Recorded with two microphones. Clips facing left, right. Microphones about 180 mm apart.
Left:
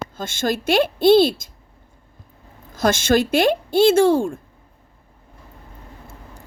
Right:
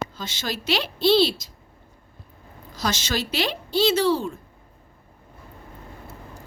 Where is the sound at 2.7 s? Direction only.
50° left (ahead or behind).